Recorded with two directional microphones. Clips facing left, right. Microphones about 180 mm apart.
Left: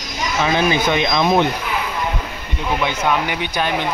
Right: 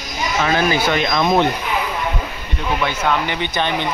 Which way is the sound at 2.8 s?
10° left (ahead or behind).